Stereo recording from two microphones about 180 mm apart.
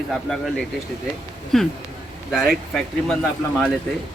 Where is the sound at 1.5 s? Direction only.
Centre (ahead or behind).